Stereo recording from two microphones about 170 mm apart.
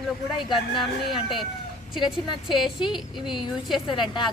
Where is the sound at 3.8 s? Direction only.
30° left (ahead or behind).